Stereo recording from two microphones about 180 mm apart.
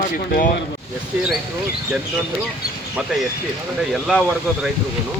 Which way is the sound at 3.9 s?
Centre (ahead or behind).